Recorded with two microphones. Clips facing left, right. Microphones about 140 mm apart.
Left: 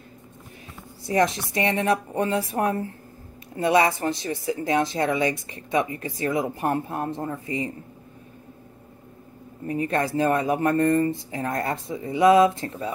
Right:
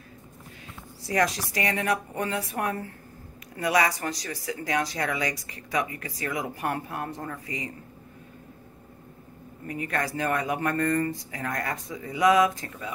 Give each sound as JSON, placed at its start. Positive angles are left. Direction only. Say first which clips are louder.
{"t": 1.0, "sound": "speech", "louder": "left 4 dB", "side_deg": 25}
{"t": 9.7, "sound": "speech", "louder": "left 6 dB", "side_deg": 30}